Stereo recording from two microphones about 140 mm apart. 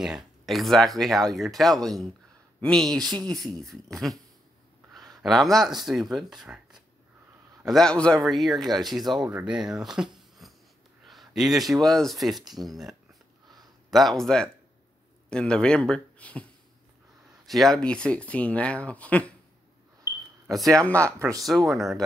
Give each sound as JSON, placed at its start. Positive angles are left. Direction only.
{"t": 0.0, "sound": "speech", "side_deg": 0}
{"t": 5.2, "sound": "speech", "side_deg": 0}
{"t": 17.5, "sound": "speech", "side_deg": 0}
{"t": 20.8, "sound": "speech", "side_deg": 10}
{"t": 21.2, "sound": "speech", "side_deg": -25}
{"t": 21.5, "sound": "speech", "side_deg": 0}